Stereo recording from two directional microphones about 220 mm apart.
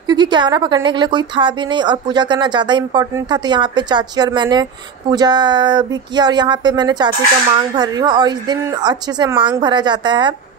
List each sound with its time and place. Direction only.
0.0 s speech: 20° right (ahead or behind)